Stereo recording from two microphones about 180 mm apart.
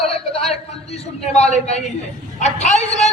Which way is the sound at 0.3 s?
35° left (ahead or behind).